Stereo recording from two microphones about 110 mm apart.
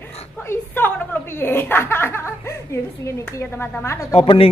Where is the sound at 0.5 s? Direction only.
20° left (ahead or behind).